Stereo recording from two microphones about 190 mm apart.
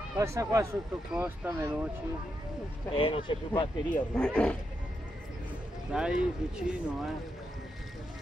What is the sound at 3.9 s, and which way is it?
Speech, 5° left (ahead or behind).